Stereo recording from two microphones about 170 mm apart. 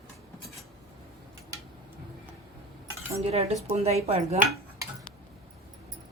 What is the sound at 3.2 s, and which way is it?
Speech, 40° right (ahead or behind).